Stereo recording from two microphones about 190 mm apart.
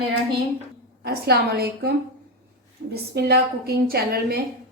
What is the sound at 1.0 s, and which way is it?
Speech, 55° right (ahead or behind).